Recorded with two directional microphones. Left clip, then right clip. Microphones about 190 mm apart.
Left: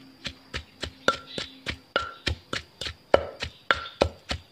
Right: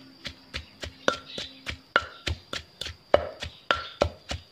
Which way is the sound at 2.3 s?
15° left (ahead or behind).